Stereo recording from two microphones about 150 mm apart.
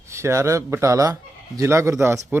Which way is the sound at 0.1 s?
20° right (ahead or behind).